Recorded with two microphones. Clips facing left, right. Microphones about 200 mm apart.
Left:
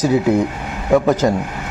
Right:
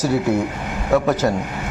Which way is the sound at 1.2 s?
Centre (ahead or behind).